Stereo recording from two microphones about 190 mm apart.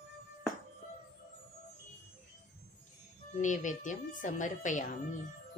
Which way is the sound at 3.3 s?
40° left (ahead or behind).